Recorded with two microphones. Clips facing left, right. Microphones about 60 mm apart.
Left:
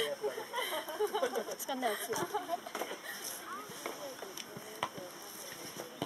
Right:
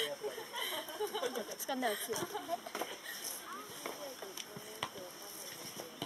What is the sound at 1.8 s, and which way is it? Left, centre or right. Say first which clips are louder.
Speech: left 5 dB; centre.